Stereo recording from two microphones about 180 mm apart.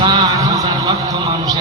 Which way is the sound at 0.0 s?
25° right (ahead or behind).